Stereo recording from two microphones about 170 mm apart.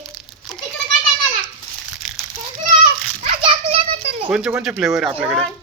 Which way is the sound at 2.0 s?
Centre (ahead or behind).